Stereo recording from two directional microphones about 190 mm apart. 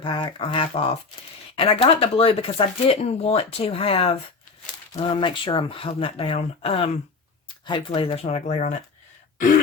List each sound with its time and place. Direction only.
0.0 s speech: 25° left (ahead or behind)